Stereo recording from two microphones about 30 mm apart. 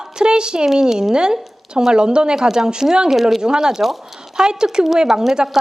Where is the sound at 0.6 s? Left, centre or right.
Centre.